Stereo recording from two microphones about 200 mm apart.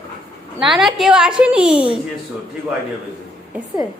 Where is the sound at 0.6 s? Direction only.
Centre (ahead or behind).